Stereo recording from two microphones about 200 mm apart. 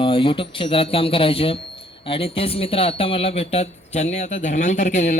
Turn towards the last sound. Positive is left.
turn(degrees=35)  # may be behind; listen again after turning